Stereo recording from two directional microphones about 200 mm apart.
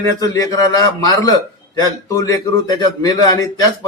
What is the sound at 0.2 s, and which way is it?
Speech, 15° left (ahead or behind).